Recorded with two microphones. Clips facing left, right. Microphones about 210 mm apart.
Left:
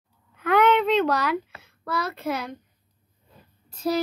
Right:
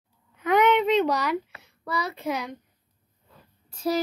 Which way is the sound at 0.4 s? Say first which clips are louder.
Left 1 dB; 15° right (ahead or behind).